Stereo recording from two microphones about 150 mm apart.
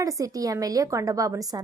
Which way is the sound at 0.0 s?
25° right (ahead or behind).